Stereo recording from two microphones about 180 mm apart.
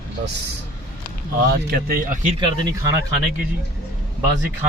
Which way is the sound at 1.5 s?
60° right (ahead or behind).